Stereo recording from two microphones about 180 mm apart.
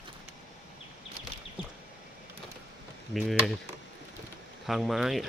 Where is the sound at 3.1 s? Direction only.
Centre (ahead or behind).